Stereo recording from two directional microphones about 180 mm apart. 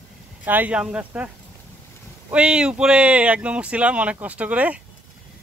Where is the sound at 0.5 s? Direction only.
10° right (ahead or behind).